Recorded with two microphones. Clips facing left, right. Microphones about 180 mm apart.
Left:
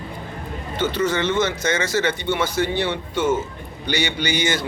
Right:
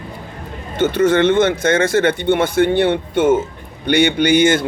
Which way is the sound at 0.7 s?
50° right (ahead or behind).